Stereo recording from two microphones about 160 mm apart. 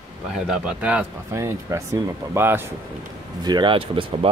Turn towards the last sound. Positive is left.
turn(degrees=-35)  # may be behind; listen again after turning